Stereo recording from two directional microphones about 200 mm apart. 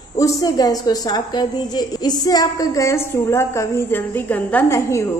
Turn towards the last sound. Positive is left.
turn(degrees=15)  # may be behind; listen again after turning